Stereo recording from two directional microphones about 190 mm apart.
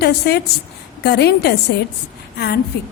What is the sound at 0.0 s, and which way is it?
A woman's voice, 60° left (ahead or behind).